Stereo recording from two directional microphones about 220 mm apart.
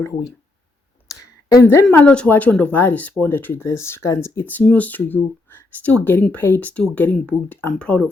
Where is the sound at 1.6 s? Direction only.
10° left (ahead or behind).